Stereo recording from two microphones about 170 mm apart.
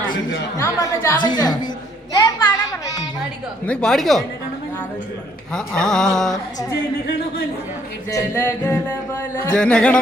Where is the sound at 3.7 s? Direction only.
5° left (ahead or behind).